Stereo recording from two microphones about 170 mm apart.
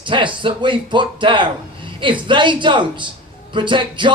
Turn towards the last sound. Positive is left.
turn(degrees=-30)  # may be behind; listen again after turning